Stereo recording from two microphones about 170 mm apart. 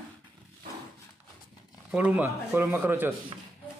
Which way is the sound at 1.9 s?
10° right (ahead or behind).